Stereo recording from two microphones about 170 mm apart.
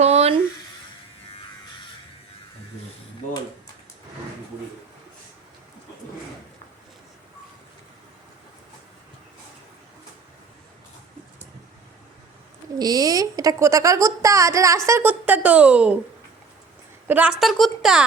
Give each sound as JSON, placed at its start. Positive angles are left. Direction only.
{"t": 0.0, "sound": "a sound", "side_deg": -35}
{"t": 12.8, "sound": "speech", "side_deg": -20}
{"t": 17.1, "sound": "a woman's voice", "side_deg": -5}